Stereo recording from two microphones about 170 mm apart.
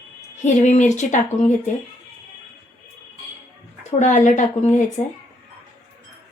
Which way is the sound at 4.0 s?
45° left (ahead or behind).